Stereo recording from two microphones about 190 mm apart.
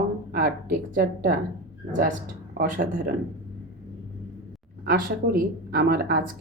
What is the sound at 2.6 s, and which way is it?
Speech, 50° right (ahead or behind).